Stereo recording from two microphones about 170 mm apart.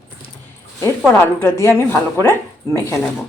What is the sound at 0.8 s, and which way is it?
A woman's voice, 15° left (ahead or behind).